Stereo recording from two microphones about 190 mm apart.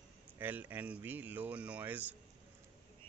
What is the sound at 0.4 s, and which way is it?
Speech, 10° right (ahead or behind).